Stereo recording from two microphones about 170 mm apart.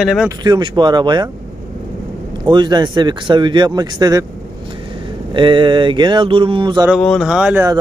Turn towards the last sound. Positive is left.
turn(degrees=-5)  # may be behind; listen again after turning